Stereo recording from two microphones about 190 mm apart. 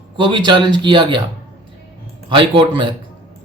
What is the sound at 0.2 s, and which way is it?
Speech, 25° right (ahead or behind).